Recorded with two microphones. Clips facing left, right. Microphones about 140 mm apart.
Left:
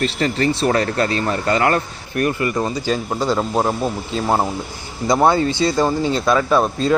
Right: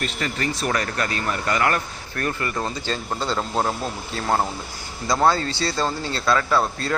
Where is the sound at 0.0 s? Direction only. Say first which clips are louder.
Left 8 dB; 30° left (ahead or behind).